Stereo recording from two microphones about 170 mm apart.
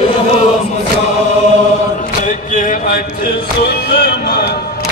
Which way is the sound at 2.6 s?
50° left (ahead or behind).